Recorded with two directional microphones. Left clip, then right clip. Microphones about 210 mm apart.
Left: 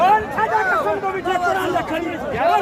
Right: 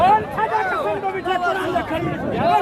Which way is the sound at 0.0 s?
Centre (ahead or behind).